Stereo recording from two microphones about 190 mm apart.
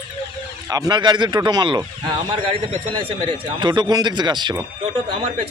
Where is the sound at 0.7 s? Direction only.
20° right (ahead or behind).